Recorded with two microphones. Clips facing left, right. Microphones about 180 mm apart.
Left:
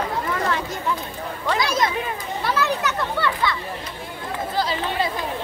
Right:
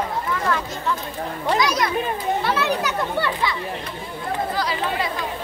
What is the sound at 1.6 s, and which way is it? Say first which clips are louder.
Speech: left 1 dB; 25° left (ahead or behind).